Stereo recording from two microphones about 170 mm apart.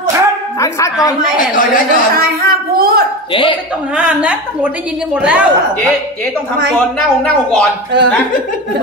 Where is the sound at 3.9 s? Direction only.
10° right (ahead or behind).